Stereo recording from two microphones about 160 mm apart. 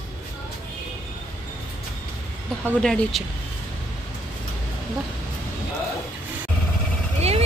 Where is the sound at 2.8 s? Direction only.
5° left (ahead or behind).